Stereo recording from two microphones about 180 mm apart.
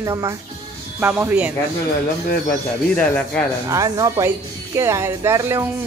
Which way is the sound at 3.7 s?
15° right (ahead or behind).